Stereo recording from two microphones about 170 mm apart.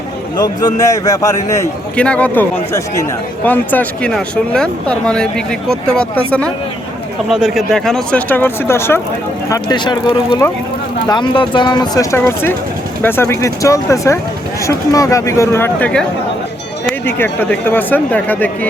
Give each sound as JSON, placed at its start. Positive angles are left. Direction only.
{"t": 0.4, "sound": "a man's voice", "side_deg": 20}
{"t": 2.0, "sound": "speech", "side_deg": 5}
{"t": 9.5, "sound": "a man's voice", "side_deg": 25}
{"t": 12.1, "sound": "speech", "side_deg": 15}